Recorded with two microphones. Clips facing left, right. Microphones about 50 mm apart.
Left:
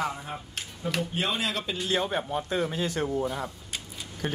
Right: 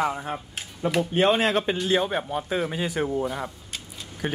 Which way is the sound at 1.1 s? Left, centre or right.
Right.